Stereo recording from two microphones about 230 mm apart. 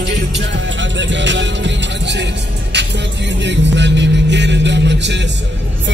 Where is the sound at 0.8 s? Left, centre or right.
Right.